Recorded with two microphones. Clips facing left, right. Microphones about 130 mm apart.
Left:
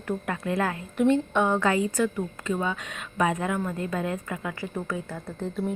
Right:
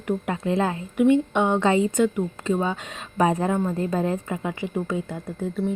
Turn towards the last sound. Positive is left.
turn(degrees=-15)  # may be behind; listen again after turning